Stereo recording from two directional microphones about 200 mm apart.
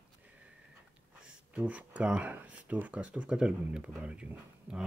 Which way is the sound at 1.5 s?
5° right (ahead or behind).